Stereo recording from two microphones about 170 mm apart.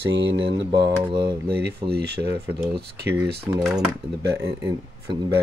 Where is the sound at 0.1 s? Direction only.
90° right.